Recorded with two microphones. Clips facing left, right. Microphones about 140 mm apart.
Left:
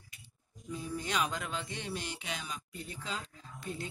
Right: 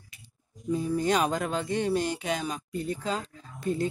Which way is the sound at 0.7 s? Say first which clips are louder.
Right 12 dB; 45° right (ahead or behind).